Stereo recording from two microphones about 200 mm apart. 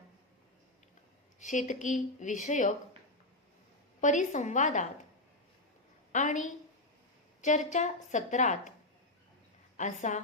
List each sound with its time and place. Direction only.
1.4 s a woman's voice: 40° left (ahead or behind)
4.0 s a woman's voice: 40° left (ahead or behind)
6.1 s a woman's voice: 40° left (ahead or behind)
9.7 s a woman's voice: 40° left (ahead or behind)